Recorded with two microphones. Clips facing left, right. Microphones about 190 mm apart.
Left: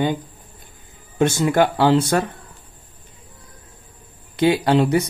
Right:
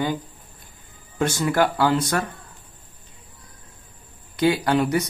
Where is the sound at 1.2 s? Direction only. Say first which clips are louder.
Left 4 dB; 25° left (ahead or behind).